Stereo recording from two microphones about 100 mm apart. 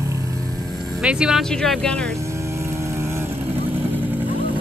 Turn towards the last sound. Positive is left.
turn(degrees=-20)  # may be behind; listen again after turning